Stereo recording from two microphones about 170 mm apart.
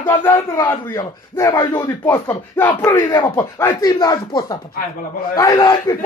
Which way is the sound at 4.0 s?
25° left (ahead or behind).